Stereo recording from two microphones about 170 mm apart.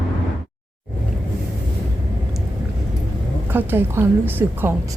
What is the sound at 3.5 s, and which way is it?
A woman's voice, 10° right (ahead or behind).